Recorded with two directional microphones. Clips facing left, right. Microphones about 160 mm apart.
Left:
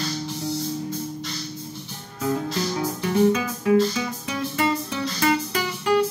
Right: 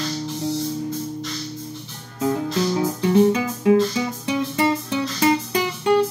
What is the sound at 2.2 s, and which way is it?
Music, 25° right (ahead or behind).